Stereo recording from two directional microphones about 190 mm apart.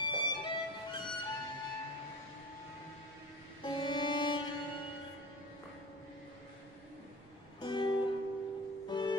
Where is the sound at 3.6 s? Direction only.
25° left (ahead or behind).